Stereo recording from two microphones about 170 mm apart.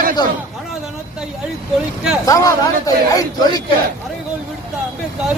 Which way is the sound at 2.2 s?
20° left (ahead or behind).